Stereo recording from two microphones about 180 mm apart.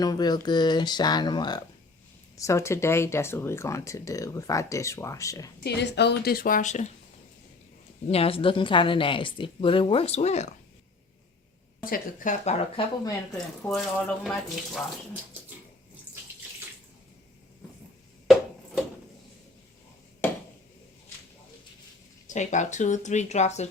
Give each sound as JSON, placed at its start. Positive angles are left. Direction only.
{"t": 0.0, "sound": "a woman's voice", "side_deg": 20}
{"t": 5.6, "sound": "a woman's voice", "side_deg": 70}
{"t": 8.0, "sound": "a woman's voice", "side_deg": 35}
{"t": 11.8, "sound": "speech", "side_deg": 50}
{"t": 12.8, "sound": "a woman's voice", "side_deg": 30}
{"t": 13.3, "sound": "speech", "side_deg": 0}
{"t": 18.3, "sound": "a sound", "side_deg": 0}
{"t": 22.3, "sound": "speech", "side_deg": 40}